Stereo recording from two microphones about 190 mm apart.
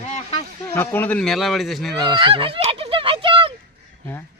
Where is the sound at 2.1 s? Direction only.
25° right (ahead or behind).